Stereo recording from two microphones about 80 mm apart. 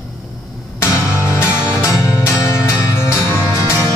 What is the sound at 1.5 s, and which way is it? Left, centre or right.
Music, centre.